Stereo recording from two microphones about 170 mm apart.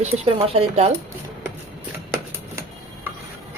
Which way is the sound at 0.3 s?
35° right (ahead or behind).